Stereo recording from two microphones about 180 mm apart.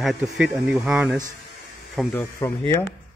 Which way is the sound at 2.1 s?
15° left (ahead or behind).